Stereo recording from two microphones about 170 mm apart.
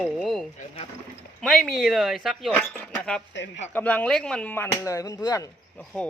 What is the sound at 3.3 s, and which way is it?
Speech, 90° left.